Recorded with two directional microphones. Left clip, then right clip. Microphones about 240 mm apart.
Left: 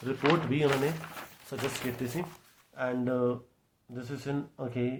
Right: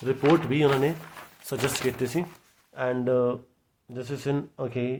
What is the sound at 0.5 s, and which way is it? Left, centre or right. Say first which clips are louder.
Speech: right 5 dB; right.